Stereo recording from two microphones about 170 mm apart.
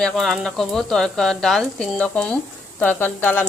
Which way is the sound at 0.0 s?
Centre (ahead or behind).